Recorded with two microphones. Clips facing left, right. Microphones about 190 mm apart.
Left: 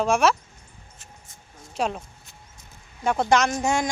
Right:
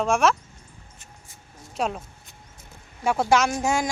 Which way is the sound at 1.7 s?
Centre (ahead or behind).